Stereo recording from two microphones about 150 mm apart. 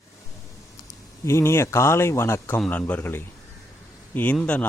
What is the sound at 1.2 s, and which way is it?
A man's voice, 20° left (ahead or behind).